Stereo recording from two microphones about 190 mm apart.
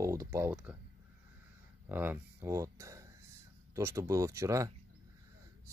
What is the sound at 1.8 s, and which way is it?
Speech, 10° right (ahead or behind).